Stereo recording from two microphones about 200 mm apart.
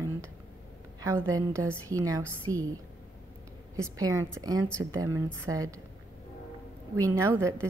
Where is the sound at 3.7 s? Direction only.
15° right (ahead or behind).